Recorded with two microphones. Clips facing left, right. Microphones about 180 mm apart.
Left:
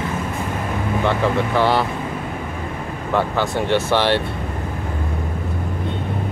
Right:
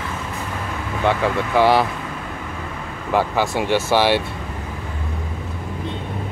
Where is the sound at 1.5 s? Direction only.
10° right (ahead or behind).